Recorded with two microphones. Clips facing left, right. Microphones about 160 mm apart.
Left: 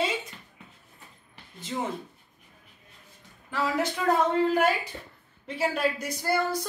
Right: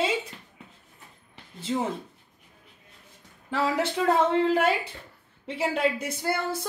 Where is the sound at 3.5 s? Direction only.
25° right (ahead or behind).